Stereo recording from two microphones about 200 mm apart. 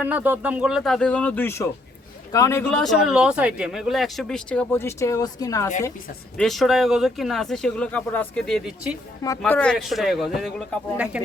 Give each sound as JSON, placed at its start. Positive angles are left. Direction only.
{"t": 0.0, "sound": "speech", "side_deg": -10}
{"t": 6.3, "sound": "speech", "side_deg": 0}